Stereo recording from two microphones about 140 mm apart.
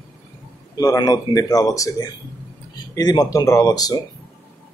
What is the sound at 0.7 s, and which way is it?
Speech, 25° left (ahead or behind).